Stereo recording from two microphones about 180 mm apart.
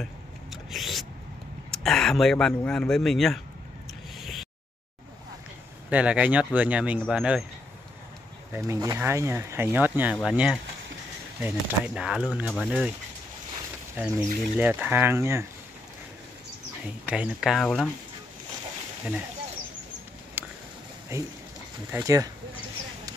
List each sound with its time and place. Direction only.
0.0 s a sound: centre (ahead or behind)
1.7 s speech: centre (ahead or behind)
4.2 s a sound: centre (ahead or behind)
5.9 s speech: 5° right (ahead or behind)
8.5 s speech: 15° right (ahead or behind)
13.9 s speech: 10° right (ahead or behind)
17.1 s speech: 5° right (ahead or behind)
20.4 s a sound: 10° right (ahead or behind)
21.1 s speech: 15° right (ahead or behind)